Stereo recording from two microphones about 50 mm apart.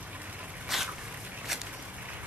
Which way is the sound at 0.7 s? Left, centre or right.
Centre.